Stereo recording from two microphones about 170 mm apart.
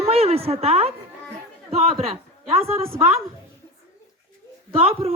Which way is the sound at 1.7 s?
40° right (ahead or behind).